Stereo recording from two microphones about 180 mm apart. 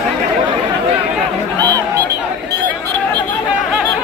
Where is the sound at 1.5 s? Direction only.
20° right (ahead or behind).